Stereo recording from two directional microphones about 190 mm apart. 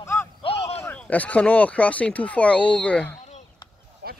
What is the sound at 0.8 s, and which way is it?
Speech, 10° left (ahead or behind).